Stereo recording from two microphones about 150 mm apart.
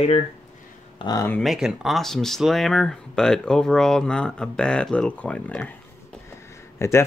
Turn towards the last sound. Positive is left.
turn(degrees=20)  # may be behind; listen again after turning